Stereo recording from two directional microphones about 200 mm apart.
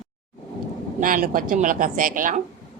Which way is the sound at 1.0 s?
40° right (ahead or behind).